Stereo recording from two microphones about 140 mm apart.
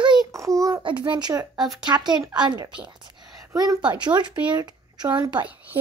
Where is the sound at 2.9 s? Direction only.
30° right (ahead or behind).